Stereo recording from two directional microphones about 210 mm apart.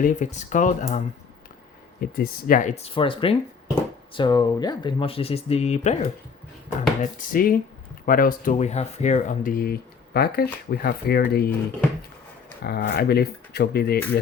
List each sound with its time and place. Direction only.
0.0 s speech: 35° left (ahead or behind)
2.0 s speech: 45° left (ahead or behind)
12.6 s speech: 50° left (ahead or behind)